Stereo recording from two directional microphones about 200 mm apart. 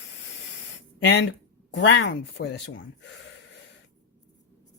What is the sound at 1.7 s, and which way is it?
Speech, 65° left (ahead or behind).